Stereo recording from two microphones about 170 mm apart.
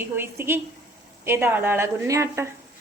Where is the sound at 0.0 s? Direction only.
15° right (ahead or behind).